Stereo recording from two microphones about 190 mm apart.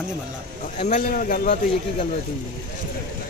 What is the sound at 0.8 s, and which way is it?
Speech, 40° left (ahead or behind).